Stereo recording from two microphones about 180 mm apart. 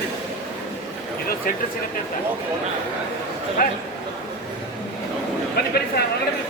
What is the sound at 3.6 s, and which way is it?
Speech, 55° left (ahead or behind).